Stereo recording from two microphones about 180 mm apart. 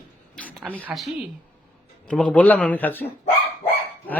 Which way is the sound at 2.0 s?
5° left (ahead or behind).